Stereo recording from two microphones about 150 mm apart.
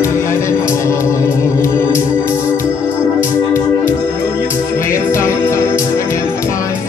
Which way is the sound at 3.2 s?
20° left (ahead or behind).